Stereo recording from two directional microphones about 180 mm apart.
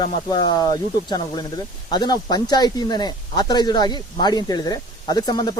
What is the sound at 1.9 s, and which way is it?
Speech, 25° left (ahead or behind).